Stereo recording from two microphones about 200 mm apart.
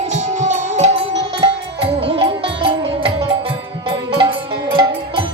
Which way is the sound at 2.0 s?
25° right (ahead or behind).